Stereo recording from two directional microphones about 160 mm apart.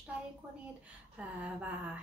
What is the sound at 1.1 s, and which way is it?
Speech, 10° right (ahead or behind).